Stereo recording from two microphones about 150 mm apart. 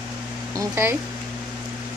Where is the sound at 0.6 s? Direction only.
15° right (ahead or behind).